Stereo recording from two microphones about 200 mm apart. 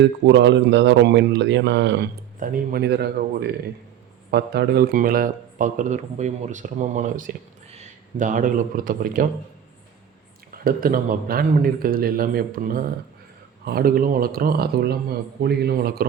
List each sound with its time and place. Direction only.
0.0 s speech: 65° right (ahead or behind)
2.4 s a man's voice: 50° right (ahead or behind)
10.6 s a man's voice: 45° right (ahead or behind)